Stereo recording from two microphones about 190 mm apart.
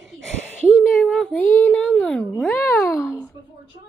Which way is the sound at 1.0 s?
Centre (ahead or behind).